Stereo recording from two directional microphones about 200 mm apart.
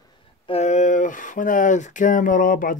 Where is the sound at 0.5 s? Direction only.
35° left (ahead or behind).